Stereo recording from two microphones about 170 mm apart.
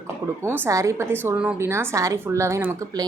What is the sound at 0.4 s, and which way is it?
A woman's voice, 15° right (ahead or behind).